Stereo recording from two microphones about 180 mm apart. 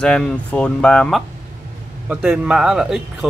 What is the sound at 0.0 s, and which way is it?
A man's voice, 5° left (ahead or behind).